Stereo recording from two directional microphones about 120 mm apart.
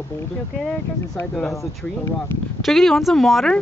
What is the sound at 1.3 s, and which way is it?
Speech, 5° left (ahead or behind).